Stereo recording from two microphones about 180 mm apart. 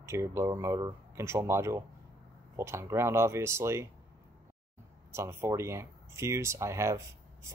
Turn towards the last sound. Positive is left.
turn(degrees=-15)  # may be behind; listen again after turning